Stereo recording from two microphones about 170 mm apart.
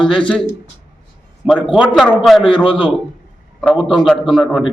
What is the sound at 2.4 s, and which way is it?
Speech, 30° left (ahead or behind).